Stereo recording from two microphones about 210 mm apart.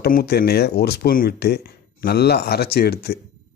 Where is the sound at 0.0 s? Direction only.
50° left (ahead or behind).